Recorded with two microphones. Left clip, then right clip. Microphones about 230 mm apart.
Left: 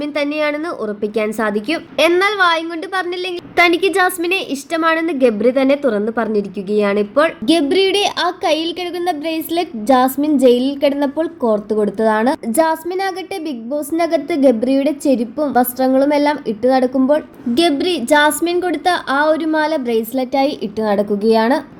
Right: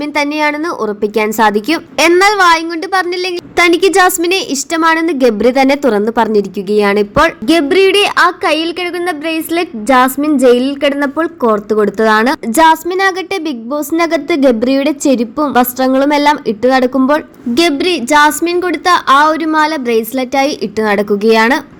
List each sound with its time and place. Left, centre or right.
0.2 s a woman's voice: right
8.4 s a woman's voice: centre; by 21.6 s right